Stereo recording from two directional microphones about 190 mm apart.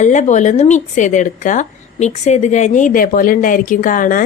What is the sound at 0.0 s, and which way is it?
A woman's voice, 40° left (ahead or behind).